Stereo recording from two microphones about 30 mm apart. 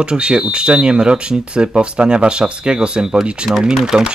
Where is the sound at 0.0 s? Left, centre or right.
Right.